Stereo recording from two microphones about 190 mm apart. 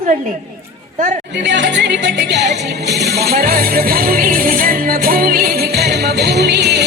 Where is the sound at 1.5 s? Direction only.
70° right (ahead or behind).